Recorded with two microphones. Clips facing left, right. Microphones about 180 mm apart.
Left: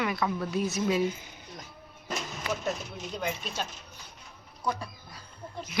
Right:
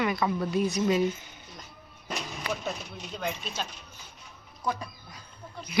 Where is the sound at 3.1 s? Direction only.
10° left (ahead or behind).